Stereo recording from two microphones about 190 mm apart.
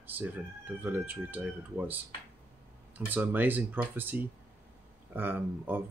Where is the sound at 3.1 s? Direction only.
10° right (ahead or behind).